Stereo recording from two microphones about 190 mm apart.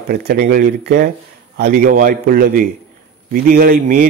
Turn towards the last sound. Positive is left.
turn(degrees=-50)  # may be behind; listen again after turning